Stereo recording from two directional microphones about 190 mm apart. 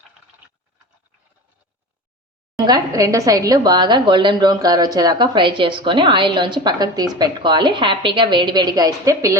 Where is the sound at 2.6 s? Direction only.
20° right (ahead or behind).